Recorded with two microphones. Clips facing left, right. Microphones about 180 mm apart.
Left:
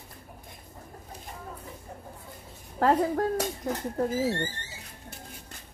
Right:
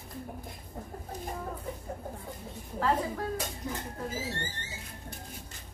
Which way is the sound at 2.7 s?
50° left (ahead or behind).